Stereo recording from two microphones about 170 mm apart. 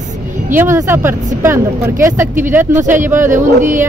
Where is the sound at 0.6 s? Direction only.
15° right (ahead or behind).